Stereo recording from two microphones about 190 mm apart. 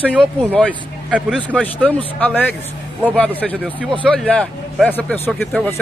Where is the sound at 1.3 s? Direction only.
5° left (ahead or behind).